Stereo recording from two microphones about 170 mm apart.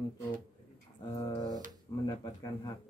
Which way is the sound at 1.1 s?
20° left (ahead or behind).